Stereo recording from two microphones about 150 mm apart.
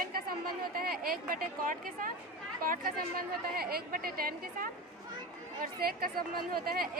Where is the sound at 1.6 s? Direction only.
65° right (ahead or behind).